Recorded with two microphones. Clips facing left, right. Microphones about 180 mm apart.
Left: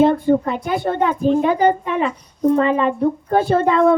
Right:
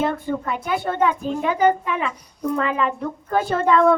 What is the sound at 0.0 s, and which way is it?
A woman's voice, 30° left (ahead or behind).